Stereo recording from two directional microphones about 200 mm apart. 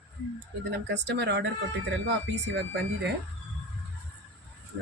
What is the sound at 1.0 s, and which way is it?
Speech, 60° right (ahead or behind).